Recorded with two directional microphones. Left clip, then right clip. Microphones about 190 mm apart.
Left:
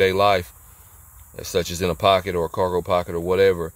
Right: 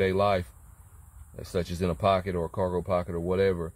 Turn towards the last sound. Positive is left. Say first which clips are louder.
# left 8 dB
turn(degrees=25)  # may be behind; listen again after turning